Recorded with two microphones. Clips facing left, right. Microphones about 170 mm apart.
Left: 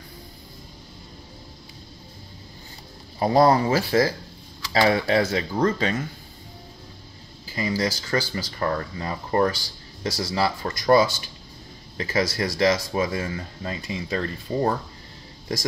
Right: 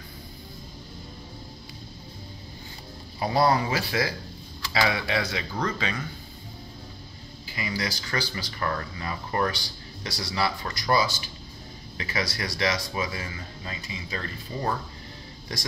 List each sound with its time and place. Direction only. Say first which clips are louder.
3.2 s speech: left 5 dB; 40° left (ahead or behind)
7.4 s speech: left 6 dB; 40° left (ahead or behind)
10.1 s speech: left 3 dB; 40° left (ahead or behind)